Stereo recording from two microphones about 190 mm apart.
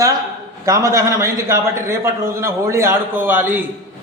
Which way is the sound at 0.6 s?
15° right (ahead or behind).